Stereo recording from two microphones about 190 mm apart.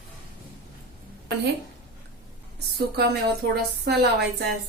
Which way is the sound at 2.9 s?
60° right (ahead or behind).